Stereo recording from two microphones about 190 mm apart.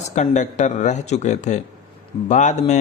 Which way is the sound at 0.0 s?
40° left (ahead or behind).